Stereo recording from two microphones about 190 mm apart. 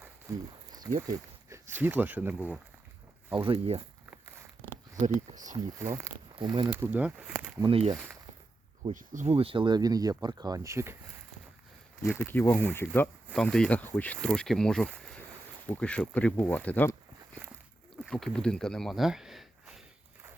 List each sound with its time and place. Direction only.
0.0 s speech: 20° right (ahead or behind)
3.3 s speech: 30° right (ahead or behind)
5.0 s speech: 40° right (ahead or behind)
5.8 s speech: 15° right (ahead or behind)
6.3 s speech: 25° right (ahead or behind)
6.7 s speech: 10° right (ahead or behind)
7.6 s speech: 30° right (ahead or behind)
8.9 s speech: 40° right (ahead or behind); by 10.9 s 15° right (ahead or behind)
12.0 s speech: 10° left (ahead or behind)
18.0 s speech: 5° left (ahead or behind)